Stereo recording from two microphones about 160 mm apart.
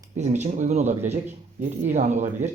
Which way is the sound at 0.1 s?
45° right (ahead or behind).